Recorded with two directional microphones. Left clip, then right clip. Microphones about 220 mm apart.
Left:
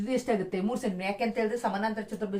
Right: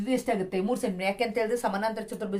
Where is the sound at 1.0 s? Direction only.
50° right (ahead or behind).